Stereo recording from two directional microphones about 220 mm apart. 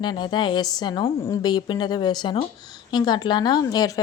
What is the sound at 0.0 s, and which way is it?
A woman's voice, 20° left (ahead or behind).